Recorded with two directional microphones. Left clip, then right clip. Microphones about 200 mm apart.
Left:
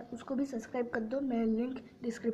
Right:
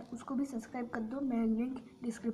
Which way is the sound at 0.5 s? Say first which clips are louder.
Left 5 dB; 10° left (ahead or behind).